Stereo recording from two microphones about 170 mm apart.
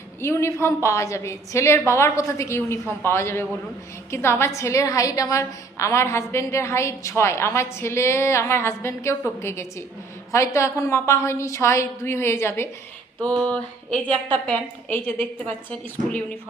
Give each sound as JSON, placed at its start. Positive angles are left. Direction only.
{"t": 0.2, "sound": "a woman's voice", "side_deg": 15}